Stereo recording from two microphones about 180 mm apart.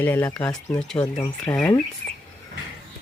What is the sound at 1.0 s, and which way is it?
Speech, 20° left (ahead or behind).